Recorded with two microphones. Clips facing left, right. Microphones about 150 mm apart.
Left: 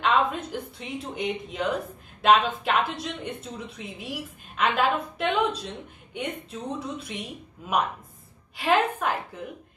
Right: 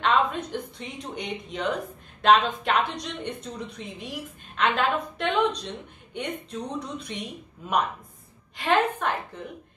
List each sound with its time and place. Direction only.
0.0 s a woman's voice: 5° left (ahead or behind)
8.5 s speech: 5° left (ahead or behind)